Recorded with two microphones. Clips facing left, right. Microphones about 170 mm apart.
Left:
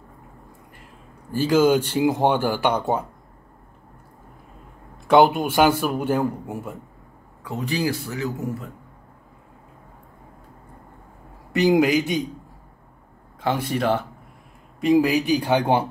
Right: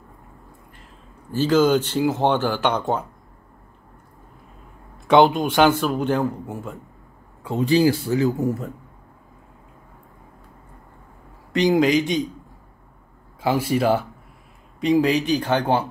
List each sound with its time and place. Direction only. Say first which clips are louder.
1.3 s speech: even; 10° left (ahead or behind)
5.0 s speech: even; 5° left (ahead or behind)
7.4 s speech: right 7 dB; 30° right (ahead or behind)
11.5 s speech: even; 10° left (ahead or behind)
13.4 s speech: right 3 dB; 5° right (ahead or behind)
14.8 s speech: even; 5° left (ahead or behind)